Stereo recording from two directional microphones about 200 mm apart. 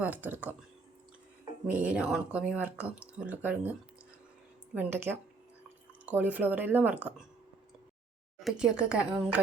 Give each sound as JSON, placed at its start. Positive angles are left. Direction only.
{"t": 0.0, "sound": "speech", "side_deg": -10}
{"t": 1.6, "sound": "speech", "side_deg": -5}
{"t": 8.4, "sound": "speech", "side_deg": 0}